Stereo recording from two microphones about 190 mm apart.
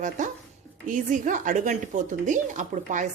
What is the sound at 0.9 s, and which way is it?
Speech, 40° right (ahead or behind).